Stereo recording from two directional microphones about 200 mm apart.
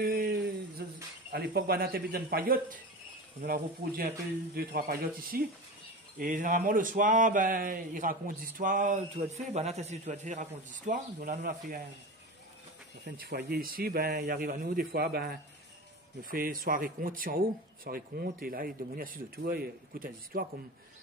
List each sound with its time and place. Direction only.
0.0 s a sound: 45° right (ahead or behind)
1.3 s a man's voice: 50° right (ahead or behind)
13.0 s a man's voice: 50° right (ahead or behind)